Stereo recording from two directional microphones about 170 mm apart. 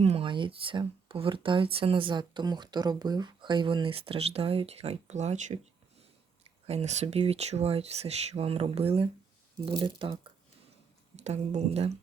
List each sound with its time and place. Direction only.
0.0 s speech: 35° right (ahead or behind)
6.7 s speech: 40° right (ahead or behind)
11.2 s speech: 40° right (ahead or behind)